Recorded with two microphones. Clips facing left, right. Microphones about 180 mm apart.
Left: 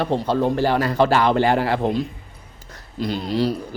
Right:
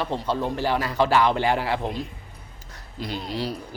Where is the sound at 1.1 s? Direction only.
40° left (ahead or behind).